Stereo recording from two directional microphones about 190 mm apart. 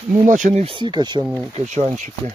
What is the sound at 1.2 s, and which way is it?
Speech, 5° right (ahead or behind).